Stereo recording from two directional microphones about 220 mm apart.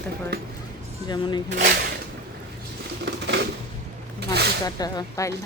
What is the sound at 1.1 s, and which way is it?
Speech, 20° left (ahead or behind).